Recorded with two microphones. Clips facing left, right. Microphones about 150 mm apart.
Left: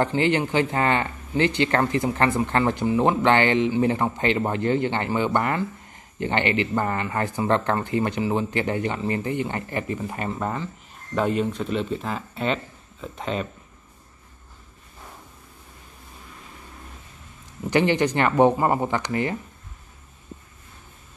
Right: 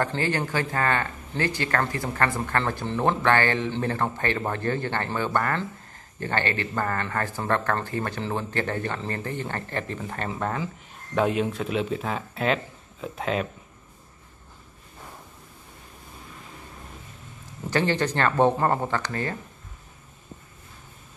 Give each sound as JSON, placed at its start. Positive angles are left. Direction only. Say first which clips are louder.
{"t": 0.0, "sound": "speech", "louder": "left 5 dB", "side_deg": 20}
{"t": 17.6, "sound": "speech", "louder": "left 4 dB", "side_deg": 15}